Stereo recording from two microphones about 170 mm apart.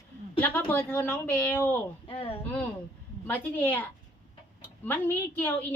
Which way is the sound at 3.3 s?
10° left (ahead or behind).